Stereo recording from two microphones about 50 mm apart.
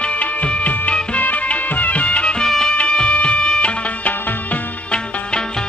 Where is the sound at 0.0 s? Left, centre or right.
Left.